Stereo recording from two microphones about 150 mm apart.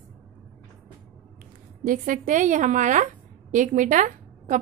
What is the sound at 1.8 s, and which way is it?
A woman's voice, 60° right (ahead or behind).